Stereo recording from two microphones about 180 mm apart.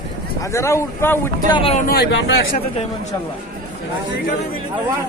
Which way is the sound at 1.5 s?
25° left (ahead or behind).